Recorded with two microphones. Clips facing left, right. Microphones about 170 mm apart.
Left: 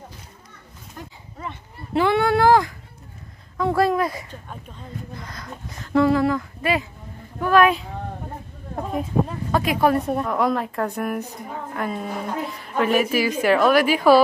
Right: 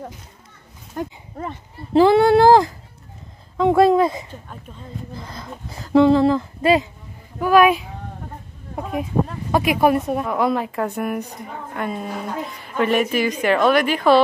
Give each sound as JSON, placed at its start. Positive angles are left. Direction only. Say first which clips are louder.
{"t": 0.9, "sound": "speech", "louder": "right 11 dB", "side_deg": -40}
{"t": 7.3, "sound": "a child's voice", "louder": "right 3 dB", "side_deg": -10}
{"t": 9.5, "sound": "a woman's voice", "louder": "right 3 dB", "side_deg": -15}